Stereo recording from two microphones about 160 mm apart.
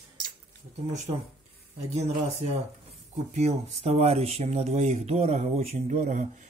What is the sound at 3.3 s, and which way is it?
Speech, 45° right (ahead or behind).